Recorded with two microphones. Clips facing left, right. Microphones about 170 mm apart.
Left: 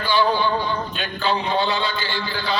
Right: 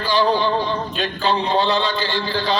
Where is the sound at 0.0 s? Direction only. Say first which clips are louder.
Right 2 dB; 35° right (ahead or behind).